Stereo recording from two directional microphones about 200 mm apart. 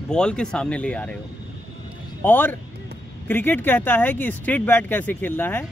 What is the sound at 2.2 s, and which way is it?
Speech, 10° left (ahead or behind).